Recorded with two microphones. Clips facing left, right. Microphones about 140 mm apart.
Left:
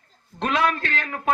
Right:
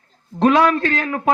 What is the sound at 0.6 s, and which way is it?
Speech, 40° right (ahead or behind).